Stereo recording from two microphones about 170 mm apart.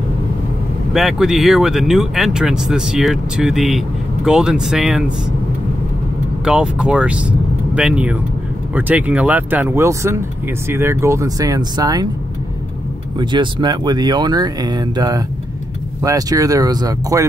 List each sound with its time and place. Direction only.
0.9 s speech: centre (ahead or behind)
6.4 s speech: 5° right (ahead or behind); by 12.1 s 20° right (ahead or behind)
13.2 s speech: 25° right (ahead or behind)